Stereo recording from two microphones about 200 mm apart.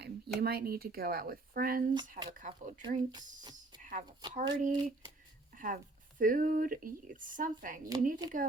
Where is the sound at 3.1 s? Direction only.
20° right (ahead or behind).